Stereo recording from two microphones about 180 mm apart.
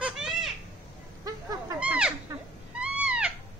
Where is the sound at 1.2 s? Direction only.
20° right (ahead or behind).